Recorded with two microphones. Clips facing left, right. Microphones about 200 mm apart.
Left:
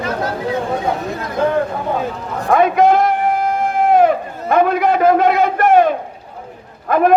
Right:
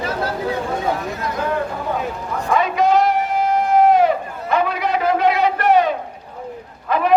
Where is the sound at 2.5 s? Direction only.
55° left (ahead or behind).